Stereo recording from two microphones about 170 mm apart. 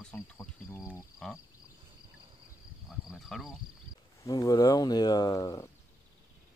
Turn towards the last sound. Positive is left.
turn(degrees=20)  # may be behind; listen again after turning